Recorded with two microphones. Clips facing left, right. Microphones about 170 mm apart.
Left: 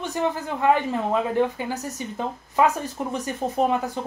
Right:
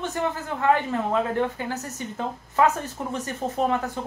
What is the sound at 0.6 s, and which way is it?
A woman's voice, 15° left (ahead or behind).